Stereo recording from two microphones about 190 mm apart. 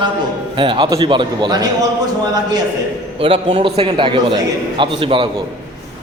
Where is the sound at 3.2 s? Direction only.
30° right (ahead or behind).